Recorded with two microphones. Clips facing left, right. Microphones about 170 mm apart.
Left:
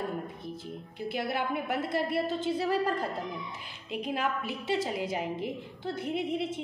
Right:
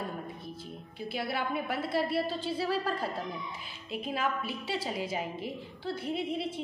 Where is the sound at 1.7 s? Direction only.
20° left (ahead or behind).